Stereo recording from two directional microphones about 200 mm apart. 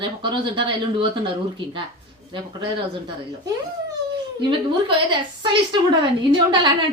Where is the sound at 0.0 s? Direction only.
25° right (ahead or behind).